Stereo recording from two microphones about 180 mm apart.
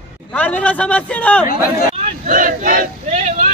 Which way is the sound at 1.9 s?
45° right (ahead or behind).